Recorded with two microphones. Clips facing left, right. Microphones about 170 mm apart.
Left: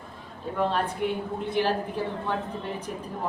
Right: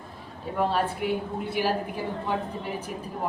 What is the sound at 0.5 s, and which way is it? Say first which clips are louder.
A woman's voice: right 1 dB; 5° right (ahead or behind).